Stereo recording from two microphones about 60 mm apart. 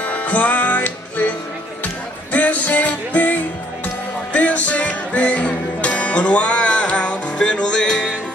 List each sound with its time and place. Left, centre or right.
0.0 s music: left
2.3 s music: left